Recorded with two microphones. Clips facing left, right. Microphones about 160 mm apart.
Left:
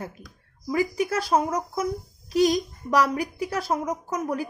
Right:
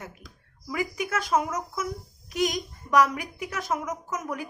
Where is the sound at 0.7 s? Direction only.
35° left (ahead or behind).